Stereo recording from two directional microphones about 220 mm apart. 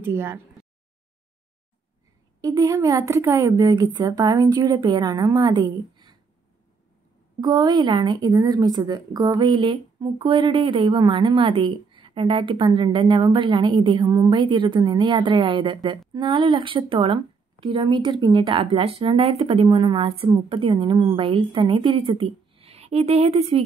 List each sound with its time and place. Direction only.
0.0 s a woman's voice: 10° right (ahead or behind)
2.4 s a woman's voice: 15° right (ahead or behind)
7.3 s speech: 20° right (ahead or behind)